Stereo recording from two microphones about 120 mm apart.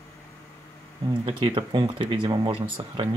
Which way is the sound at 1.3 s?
45° right (ahead or behind).